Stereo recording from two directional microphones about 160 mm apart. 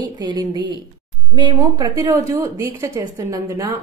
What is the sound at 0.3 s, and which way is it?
A woman's voice, 30° right (ahead or behind).